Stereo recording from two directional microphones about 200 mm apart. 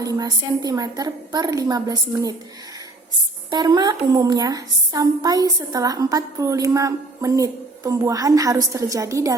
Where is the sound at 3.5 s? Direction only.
20° right (ahead or behind).